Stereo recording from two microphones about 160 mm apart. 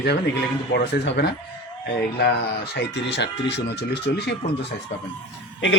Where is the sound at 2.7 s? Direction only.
90° left.